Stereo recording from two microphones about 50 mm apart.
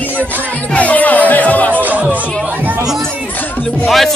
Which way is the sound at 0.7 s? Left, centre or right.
Left.